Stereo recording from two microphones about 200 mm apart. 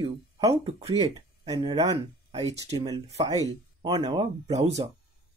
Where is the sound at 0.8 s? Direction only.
20° right (ahead or behind).